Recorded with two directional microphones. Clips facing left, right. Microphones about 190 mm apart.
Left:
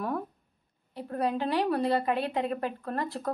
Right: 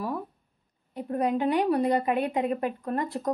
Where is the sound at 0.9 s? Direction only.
20° right (ahead or behind).